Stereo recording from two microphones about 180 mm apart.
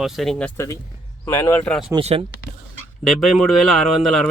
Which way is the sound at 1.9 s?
30° right (ahead or behind).